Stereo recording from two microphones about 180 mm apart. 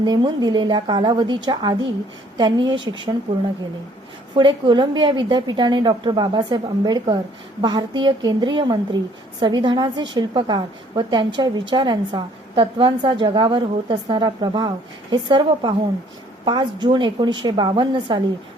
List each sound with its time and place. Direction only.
0.0 s a woman's voice: 25° right (ahead or behind)
4.4 s a woman's voice: 25° right (ahead or behind)